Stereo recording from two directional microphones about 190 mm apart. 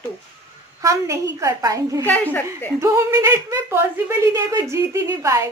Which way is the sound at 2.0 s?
10° left (ahead or behind).